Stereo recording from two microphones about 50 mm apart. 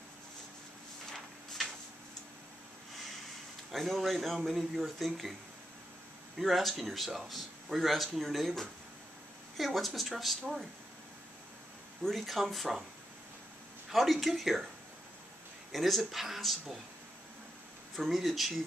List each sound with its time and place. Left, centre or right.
3.7 s speech: centre
6.3 s speech: centre
12.0 s speech: centre
13.9 s speech: centre
15.7 s speech: centre
17.9 s speech: centre